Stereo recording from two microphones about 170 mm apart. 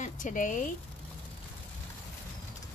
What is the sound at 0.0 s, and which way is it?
Speech, 50° left (ahead or behind).